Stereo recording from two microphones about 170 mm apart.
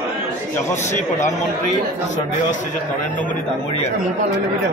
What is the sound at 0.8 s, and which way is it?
Speech, 45° left (ahead or behind).